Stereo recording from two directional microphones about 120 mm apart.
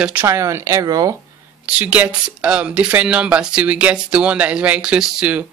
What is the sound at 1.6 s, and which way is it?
Speech, 10° right (ahead or behind).